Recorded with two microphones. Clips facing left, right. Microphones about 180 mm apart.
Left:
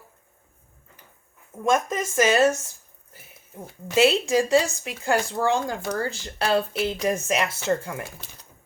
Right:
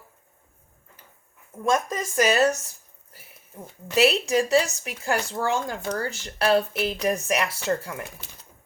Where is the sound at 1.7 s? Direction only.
20° left (ahead or behind).